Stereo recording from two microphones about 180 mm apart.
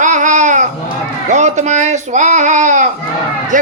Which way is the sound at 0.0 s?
45° right (ahead or behind).